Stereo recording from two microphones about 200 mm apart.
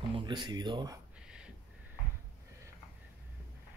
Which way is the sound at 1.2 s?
5° right (ahead or behind).